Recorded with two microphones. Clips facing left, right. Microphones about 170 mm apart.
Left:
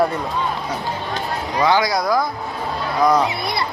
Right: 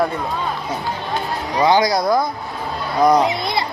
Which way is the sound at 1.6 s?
20° right (ahead or behind).